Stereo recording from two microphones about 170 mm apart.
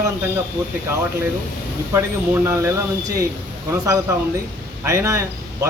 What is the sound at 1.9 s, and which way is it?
Speech, 15° right (ahead or behind).